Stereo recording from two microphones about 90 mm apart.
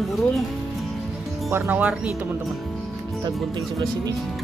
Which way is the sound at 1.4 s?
25° right (ahead or behind).